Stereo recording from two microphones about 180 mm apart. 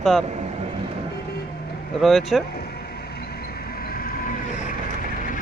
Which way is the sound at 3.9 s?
55° left (ahead or behind).